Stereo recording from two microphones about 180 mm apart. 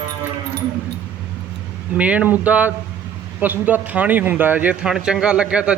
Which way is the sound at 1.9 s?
10° right (ahead or behind).